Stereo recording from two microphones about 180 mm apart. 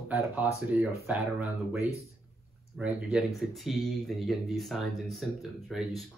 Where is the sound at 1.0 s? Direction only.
10° right (ahead or behind).